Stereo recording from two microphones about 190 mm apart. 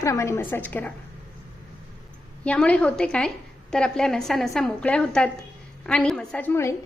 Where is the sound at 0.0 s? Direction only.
15° left (ahead or behind).